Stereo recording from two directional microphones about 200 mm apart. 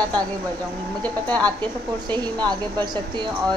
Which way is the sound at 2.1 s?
20° right (ahead or behind).